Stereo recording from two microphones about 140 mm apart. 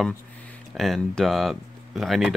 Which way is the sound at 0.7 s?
Centre (ahead or behind).